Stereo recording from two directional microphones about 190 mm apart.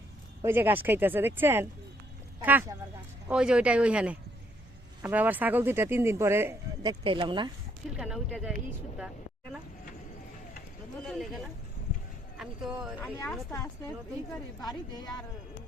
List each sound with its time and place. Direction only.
0.4 s speech: 10° right (ahead or behind)
7.0 s speech: 25° right (ahead or behind)
7.9 s speech: centre (ahead or behind)
11.0 s speech: centre (ahead or behind)
13.0 s a woman's voice: 10° left (ahead or behind)